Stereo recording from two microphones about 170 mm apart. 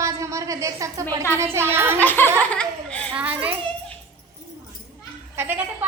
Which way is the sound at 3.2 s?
10° right (ahead or behind).